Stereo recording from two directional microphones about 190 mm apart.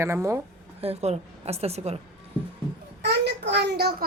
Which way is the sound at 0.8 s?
35° right (ahead or behind).